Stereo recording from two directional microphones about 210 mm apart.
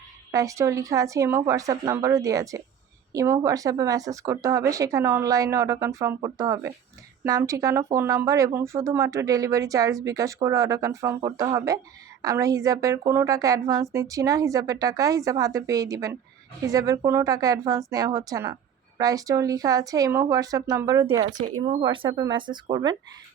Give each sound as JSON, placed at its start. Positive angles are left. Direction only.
{"t": 0.3, "sound": "speech", "side_deg": -15}